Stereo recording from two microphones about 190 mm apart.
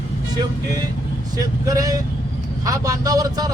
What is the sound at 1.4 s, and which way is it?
Speech, 20° right (ahead or behind).